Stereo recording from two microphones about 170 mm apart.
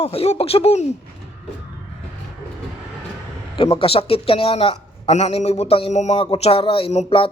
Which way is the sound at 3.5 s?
30° left (ahead or behind).